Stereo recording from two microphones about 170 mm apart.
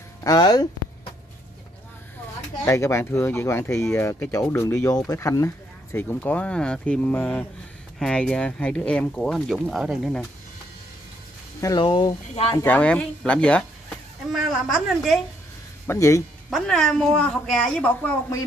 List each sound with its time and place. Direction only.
0.2 s speech: 25° left (ahead or behind)
2.6 s speech: 15° left (ahead or behind); by 10.2 s centre (ahead or behind)
11.6 s speech: 25° left (ahead or behind)
12.5 s speech: 10° left (ahead or behind)
15.9 s speech: 20° left (ahead or behind)
16.4 s speech: centre (ahead or behind)